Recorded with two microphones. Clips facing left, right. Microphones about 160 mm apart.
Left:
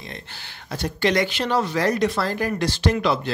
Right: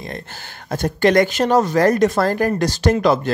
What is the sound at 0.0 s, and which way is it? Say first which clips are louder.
Speech: right 7 dB; 45° right (ahead or behind).